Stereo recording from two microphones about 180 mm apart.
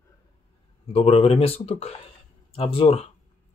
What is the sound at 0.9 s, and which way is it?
Speech, 35° left (ahead or behind).